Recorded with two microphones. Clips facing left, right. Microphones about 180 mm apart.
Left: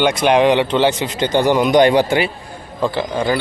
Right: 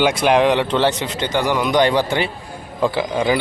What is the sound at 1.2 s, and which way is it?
Speech, 25° left (ahead or behind).